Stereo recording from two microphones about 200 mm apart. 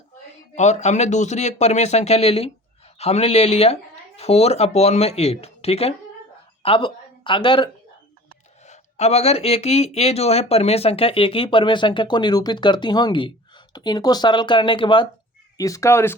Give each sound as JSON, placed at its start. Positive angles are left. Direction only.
{"t": 0.5, "sound": "speech", "side_deg": 35}